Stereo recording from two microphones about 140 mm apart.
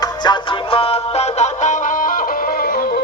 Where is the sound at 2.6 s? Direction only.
90° left.